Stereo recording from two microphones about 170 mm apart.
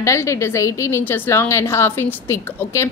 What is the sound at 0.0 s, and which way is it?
A woman's voice, 15° left (ahead or behind).